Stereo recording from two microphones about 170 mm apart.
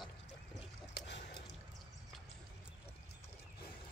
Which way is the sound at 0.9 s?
80° left.